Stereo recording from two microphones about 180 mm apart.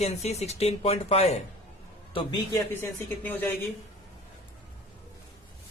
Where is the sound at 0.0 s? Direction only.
35° left (ahead or behind).